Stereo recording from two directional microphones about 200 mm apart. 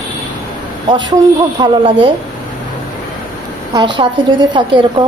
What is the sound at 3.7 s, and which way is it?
A woman's voice, 25° right (ahead or behind).